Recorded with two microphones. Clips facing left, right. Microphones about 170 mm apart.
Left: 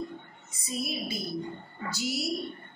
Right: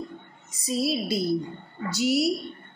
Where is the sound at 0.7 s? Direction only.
85° right.